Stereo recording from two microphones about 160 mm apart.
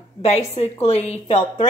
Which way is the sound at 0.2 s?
45° left (ahead or behind).